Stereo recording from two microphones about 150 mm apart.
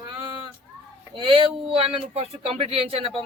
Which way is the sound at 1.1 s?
35° right (ahead or behind).